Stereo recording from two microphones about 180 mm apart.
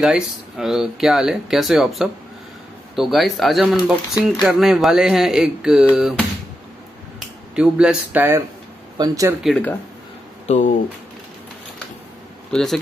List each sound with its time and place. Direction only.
0.0 s speech: 5° right (ahead or behind)
7.2 s speech: 5° right (ahead or behind)
8.9 s speech: 20° right (ahead or behind)
9.4 s speech: 5° left (ahead or behind)
10.4 s speech: 40° left (ahead or behind)
12.5 s speech: centre (ahead or behind)